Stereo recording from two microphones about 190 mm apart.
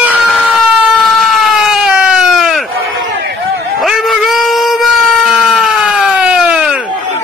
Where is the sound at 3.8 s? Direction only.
Centre (ahead or behind).